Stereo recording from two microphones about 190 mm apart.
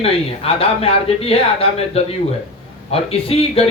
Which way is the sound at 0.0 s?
30° left (ahead or behind).